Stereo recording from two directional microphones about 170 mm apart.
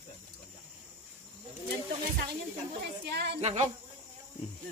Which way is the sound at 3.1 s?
75° right (ahead or behind).